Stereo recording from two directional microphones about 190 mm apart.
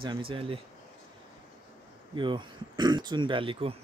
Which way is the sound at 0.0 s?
25° right (ahead or behind).